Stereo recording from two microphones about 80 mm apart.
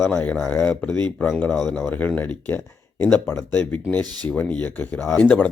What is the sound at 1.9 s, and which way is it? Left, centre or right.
Speech, left.